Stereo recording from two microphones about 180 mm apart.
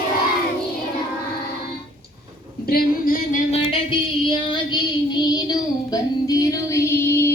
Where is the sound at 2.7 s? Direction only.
50° left (ahead or behind).